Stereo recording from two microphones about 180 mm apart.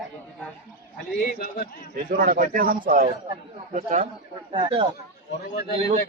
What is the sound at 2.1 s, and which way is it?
Speech, 55° right (ahead or behind).